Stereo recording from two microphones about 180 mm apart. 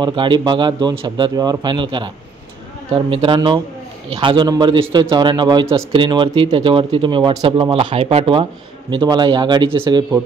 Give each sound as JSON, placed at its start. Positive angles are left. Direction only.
{"t": 0.0, "sound": "speech", "side_deg": -25}